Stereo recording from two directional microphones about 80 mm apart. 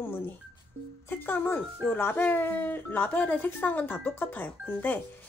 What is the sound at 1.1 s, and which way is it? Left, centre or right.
Speech, left.